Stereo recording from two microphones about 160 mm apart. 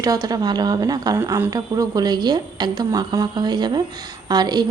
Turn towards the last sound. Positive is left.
turn(degrees=-25)  # may be behind; listen again after turning